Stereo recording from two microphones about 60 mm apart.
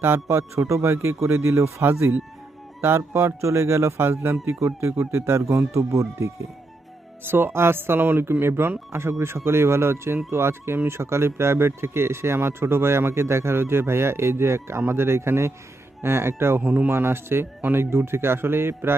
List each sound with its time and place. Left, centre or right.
0.0 s speech: right
7.3 s speech: right
16.6 s speech: right
16.9 s speech: right